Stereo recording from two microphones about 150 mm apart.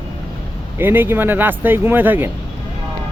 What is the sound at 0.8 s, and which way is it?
Speech, 15° right (ahead or behind).